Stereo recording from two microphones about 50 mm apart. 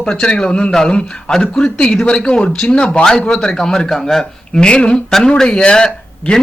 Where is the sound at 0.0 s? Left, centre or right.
Centre.